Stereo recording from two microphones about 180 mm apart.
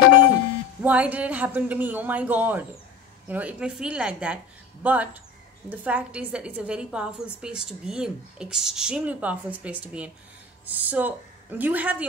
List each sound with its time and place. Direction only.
0.8 s a man's voice: 10° right (ahead or behind)